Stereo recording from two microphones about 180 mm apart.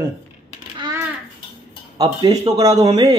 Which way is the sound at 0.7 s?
25° right (ahead or behind).